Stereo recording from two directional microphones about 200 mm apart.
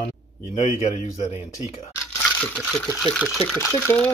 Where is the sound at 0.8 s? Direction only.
35° left (ahead or behind).